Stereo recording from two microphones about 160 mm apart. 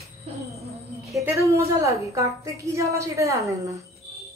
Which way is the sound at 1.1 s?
20° right (ahead or behind).